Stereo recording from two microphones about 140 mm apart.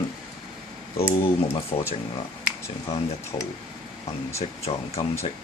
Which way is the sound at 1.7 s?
40° left (ahead or behind).